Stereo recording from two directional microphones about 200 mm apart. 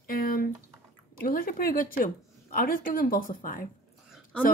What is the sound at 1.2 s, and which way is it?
Speech, 45° left (ahead or behind).